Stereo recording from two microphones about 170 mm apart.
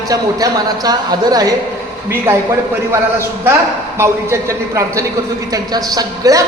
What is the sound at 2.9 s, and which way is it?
A man's voice, 15° right (ahead or behind).